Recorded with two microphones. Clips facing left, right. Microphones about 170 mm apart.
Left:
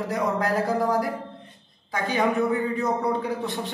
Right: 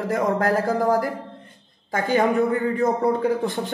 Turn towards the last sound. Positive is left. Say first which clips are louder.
# right 5 dB
turn(degrees=-45)  # may be behind; listen again after turning